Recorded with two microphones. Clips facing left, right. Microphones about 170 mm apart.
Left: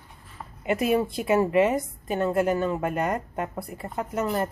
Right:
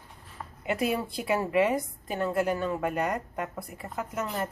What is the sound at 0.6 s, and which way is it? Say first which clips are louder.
A woman's voice: left 5 dB; 20° left (ahead or behind).